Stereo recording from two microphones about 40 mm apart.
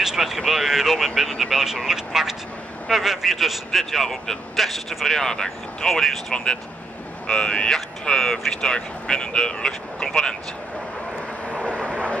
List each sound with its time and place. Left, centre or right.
0.0 s a man's voice: centre
6.3 s speech: left
11.7 s vehicle: centre